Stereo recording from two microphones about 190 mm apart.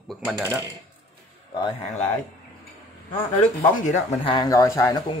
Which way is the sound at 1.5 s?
25° left (ahead or behind).